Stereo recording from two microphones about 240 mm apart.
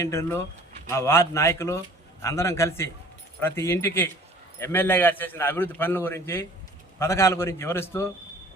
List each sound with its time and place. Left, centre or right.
0.0 s a man's voice: centre